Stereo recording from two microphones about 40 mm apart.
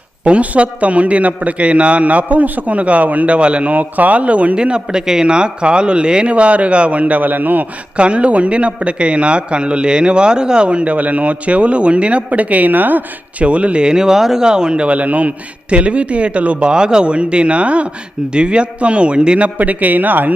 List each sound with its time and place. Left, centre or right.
0.3 s a man's voice: right
7.9 s a man's voice: right
13.4 s a man's voice: right
13.8 s a man's voice: centre
14.9 s a man's voice: right
16.6 s a man's voice: right
19.5 s speech: right